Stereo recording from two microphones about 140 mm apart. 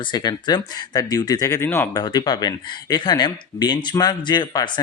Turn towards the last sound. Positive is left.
turn(degrees=30)  # may be behind; listen again after turning